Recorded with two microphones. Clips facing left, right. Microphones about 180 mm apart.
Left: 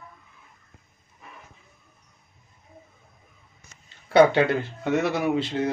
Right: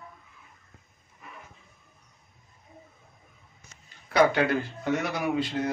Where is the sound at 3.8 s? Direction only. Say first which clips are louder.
Left 5 dB; 25° left (ahead or behind).